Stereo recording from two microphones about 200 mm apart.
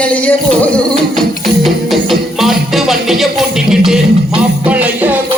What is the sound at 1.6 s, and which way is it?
Music, centre (ahead or behind).